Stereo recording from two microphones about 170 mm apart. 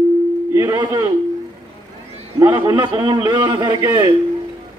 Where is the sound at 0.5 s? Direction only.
20° right (ahead or behind).